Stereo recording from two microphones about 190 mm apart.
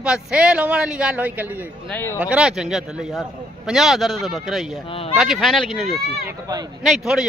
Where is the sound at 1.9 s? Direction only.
10° left (ahead or behind).